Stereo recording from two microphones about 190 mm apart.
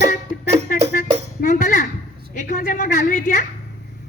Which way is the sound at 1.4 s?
40° left (ahead or behind).